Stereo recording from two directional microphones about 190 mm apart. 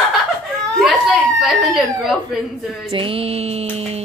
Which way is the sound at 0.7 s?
Centre (ahead or behind).